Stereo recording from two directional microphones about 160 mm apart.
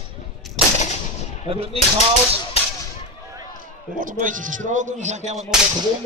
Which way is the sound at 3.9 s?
55° right (ahead or behind).